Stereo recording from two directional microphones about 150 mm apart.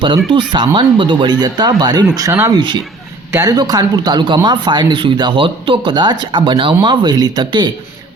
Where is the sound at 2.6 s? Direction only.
30° right (ahead or behind).